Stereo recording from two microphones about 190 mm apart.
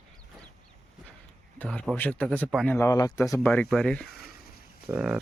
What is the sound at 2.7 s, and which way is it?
Speech, 15° left (ahead or behind).